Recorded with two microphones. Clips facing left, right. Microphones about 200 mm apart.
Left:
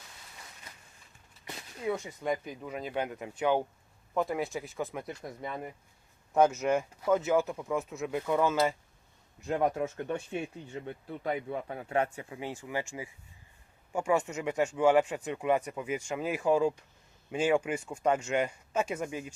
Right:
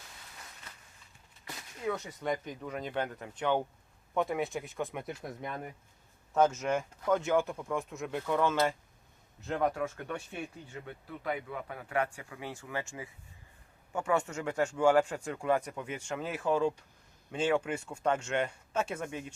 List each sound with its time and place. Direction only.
1.5 s speech: 10° left (ahead or behind)
6.3 s speech: 10° left (ahead or behind)
9.5 s speech: 20° left (ahead or behind)